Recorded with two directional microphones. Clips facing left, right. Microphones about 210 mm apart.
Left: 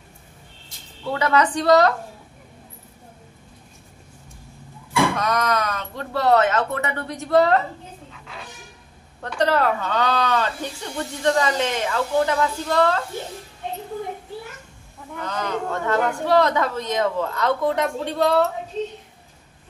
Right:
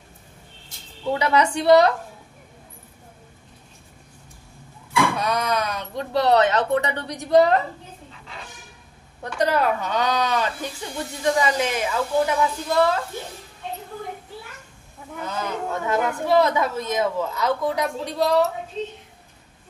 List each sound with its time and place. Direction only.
1.0 s a woman's voice: 15° right (ahead or behind)
5.1 s a woman's voice: 10° right (ahead or behind)
9.3 s a woman's voice: 10° right (ahead or behind)
15.1 s a woman's voice: 10° right (ahead or behind)